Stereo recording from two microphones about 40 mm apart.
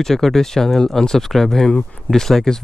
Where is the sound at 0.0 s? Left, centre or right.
Centre.